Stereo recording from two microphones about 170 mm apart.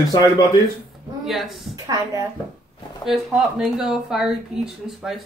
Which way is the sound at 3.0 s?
Centre (ahead or behind).